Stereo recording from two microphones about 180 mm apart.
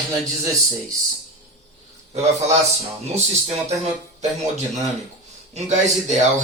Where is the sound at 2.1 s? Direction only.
40° right (ahead or behind).